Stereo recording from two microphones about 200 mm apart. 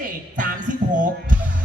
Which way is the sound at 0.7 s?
40° right (ahead or behind).